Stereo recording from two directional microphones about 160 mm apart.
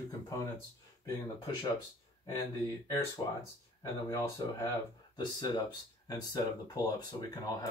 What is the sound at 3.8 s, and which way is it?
Speech, 20° left (ahead or behind).